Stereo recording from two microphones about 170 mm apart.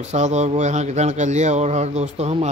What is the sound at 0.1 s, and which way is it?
Speech, 40° right (ahead or behind).